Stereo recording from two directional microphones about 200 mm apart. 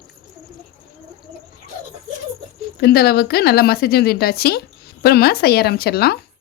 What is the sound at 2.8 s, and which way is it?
Speech, 50° left (ahead or behind).